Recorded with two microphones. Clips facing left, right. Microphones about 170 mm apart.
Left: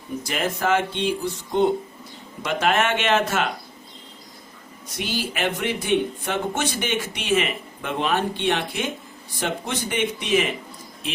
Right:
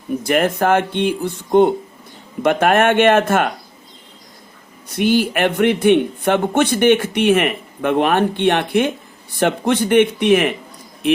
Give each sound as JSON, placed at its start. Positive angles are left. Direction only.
{"t": 0.2, "sound": "speech", "side_deg": -55}
{"t": 4.9, "sound": "speech", "side_deg": -55}